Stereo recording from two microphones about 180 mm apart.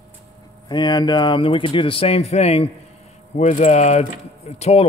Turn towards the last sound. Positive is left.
turn(degrees=35)  # may be behind; listen again after turning